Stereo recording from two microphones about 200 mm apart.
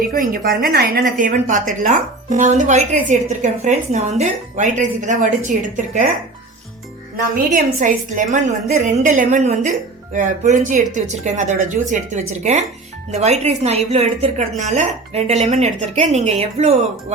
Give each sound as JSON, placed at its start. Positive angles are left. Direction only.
{"t": 0.0, "sound": "speech", "side_deg": -45}
{"t": 7.8, "sound": "speech", "side_deg": -40}